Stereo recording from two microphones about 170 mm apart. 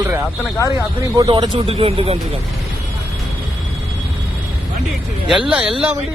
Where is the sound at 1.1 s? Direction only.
25° right (ahead or behind).